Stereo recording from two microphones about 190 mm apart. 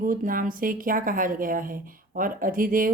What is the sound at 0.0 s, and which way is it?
A woman's voice, 45° right (ahead or behind).